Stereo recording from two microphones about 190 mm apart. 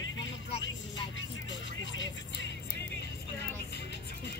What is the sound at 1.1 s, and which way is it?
Music, 80° left.